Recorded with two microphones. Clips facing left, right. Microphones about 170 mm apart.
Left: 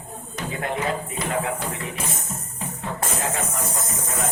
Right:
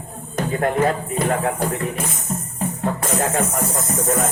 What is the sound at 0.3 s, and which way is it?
Music, 50° right (ahead or behind).